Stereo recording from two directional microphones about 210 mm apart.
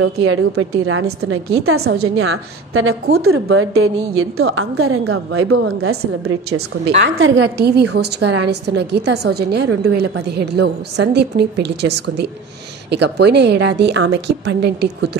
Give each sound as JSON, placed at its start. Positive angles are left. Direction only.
{"t": 0.0, "sound": "a woman's voice", "side_deg": -75}
{"t": 7.0, "sound": "a woman's voice", "side_deg": -70}
{"t": 7.4, "sound": "a woman's voice", "side_deg": -50}